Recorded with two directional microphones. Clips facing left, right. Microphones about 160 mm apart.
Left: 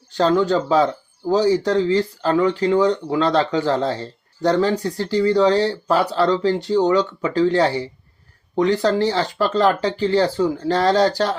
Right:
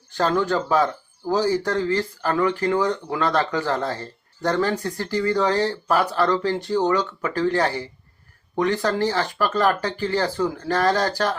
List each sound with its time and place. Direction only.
0.1 s speech: 20° left (ahead or behind)